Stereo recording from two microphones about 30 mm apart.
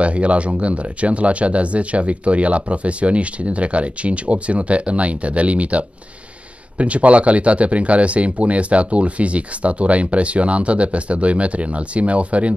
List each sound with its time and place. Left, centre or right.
0.0 s speech: right